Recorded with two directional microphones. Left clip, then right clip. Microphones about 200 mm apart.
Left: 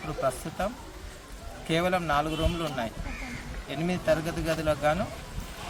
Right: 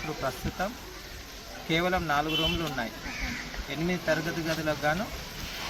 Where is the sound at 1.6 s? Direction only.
25° left (ahead or behind).